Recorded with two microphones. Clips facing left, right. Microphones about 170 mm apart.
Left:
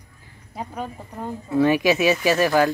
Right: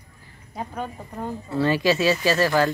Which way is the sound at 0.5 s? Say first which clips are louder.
Even; 5° left (ahead or behind).